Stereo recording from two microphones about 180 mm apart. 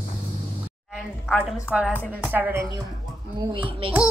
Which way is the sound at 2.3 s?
10° right (ahead or behind).